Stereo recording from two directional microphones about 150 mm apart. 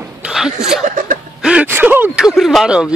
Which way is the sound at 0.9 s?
60° right (ahead or behind).